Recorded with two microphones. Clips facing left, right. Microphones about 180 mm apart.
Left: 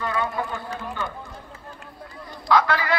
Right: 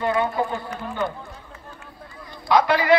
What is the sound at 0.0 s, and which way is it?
Speech, 25° right (ahead or behind).